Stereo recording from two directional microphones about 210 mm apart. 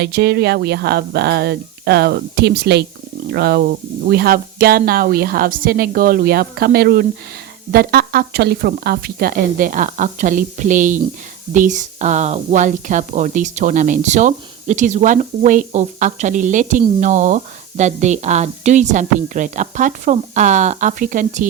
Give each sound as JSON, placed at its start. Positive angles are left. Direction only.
{"t": 0.0, "sound": "speech", "side_deg": -50}